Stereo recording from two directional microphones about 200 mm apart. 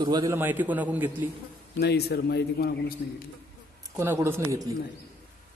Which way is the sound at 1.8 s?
55° left (ahead or behind).